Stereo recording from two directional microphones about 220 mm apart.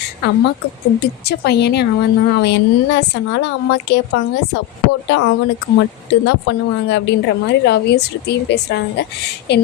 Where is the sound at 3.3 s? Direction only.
50° left (ahead or behind).